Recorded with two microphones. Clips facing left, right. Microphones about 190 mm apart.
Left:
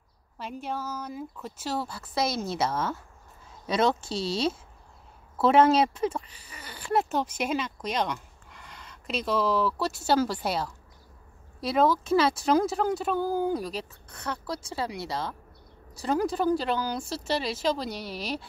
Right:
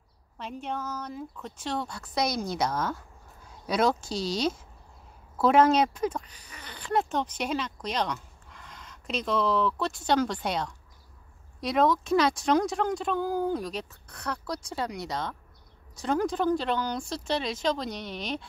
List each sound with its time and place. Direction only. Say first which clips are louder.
0.4 s speech: even; 5° left (ahead or behind)
4.1 s speech: even; 30° left (ahead or behind)
5.4 s speech: left 1 dB; 5° left (ahead or behind)